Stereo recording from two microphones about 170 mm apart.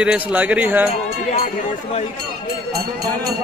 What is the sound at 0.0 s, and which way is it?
Speech, 5° right (ahead or behind).